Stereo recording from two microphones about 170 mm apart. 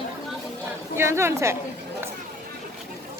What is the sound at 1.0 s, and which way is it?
Speech, 15° right (ahead or behind).